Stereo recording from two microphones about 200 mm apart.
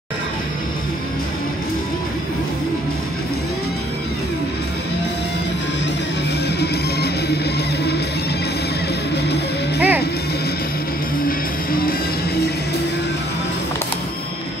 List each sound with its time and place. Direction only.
6.6 s music: 55° left (ahead or behind)
9.1 s music: 55° left (ahead or behind)
9.8 s music: 10° right (ahead or behind)
11.2 s music: 45° left (ahead or behind)